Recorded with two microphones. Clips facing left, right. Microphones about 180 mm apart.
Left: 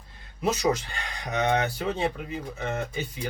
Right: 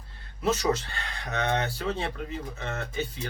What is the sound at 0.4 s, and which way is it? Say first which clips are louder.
Speech: left 1 dB; 15° left (ahead or behind).